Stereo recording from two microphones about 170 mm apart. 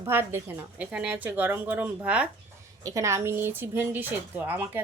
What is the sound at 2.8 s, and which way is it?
A woman's voice, 20° right (ahead or behind).